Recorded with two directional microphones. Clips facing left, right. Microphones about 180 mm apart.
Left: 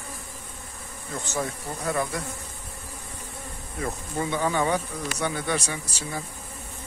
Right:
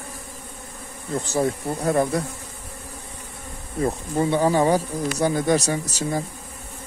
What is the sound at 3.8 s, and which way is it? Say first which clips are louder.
Speech: right 7 dB; 30° right (ahead or behind).